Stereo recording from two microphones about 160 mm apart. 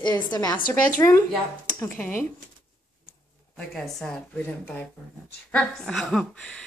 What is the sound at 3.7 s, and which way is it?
Speech, centre (ahead or behind).